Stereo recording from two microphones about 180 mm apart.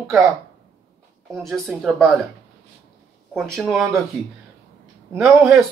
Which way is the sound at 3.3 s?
5° right (ahead or behind).